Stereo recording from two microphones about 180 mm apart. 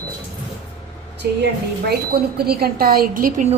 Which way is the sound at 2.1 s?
60° right (ahead or behind).